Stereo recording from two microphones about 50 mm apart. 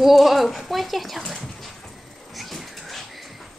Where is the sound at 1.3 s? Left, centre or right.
Centre.